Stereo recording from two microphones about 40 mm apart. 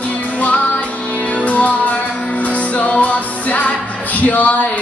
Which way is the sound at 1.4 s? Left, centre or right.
Left.